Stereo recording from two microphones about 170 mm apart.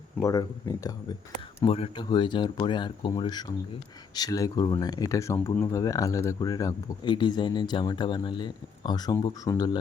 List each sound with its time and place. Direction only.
0.2 s speech: 20° left (ahead or behind)
1.6 s speech: 30° left (ahead or behind)